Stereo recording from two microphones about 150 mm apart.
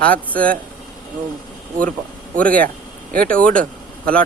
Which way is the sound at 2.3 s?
10° left (ahead or behind).